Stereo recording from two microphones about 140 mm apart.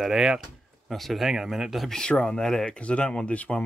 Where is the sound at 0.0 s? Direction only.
5° right (ahead or behind).